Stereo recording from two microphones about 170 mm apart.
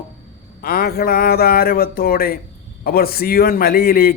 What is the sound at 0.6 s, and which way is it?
A man's voice, 60° left (ahead or behind).